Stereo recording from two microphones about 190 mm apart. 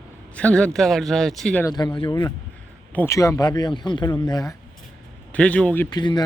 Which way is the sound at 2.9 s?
10° left (ahead or behind).